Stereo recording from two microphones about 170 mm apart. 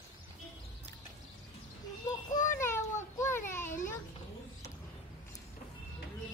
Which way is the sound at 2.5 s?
15° left (ahead or behind).